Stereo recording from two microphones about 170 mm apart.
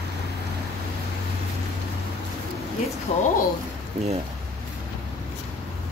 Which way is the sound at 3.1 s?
45° left (ahead or behind).